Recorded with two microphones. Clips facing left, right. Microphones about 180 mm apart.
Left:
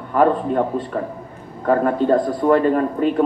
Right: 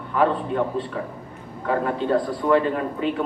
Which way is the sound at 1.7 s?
45° left (ahead or behind).